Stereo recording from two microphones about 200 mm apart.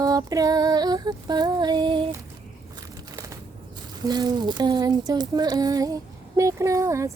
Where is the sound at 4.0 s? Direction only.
20° right (ahead or behind).